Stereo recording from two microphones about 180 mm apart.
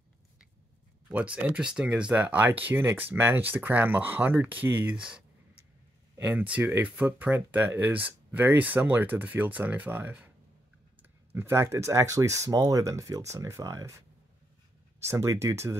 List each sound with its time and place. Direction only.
1.1 s speech: 5° right (ahead or behind)
6.1 s speech: 10° right (ahead or behind)
11.3 s speech: 15° right (ahead or behind)
15.0 s speech: 15° right (ahead or behind)